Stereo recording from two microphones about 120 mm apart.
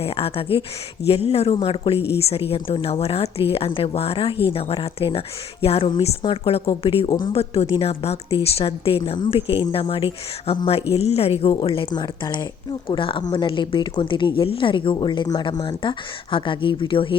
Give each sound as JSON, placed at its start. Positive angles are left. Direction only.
{"t": 0.0, "sound": "speech", "side_deg": 55}